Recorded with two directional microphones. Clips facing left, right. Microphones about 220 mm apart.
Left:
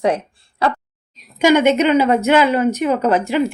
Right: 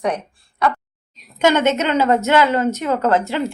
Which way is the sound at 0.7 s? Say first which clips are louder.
Left 1 dB; centre (ahead or behind).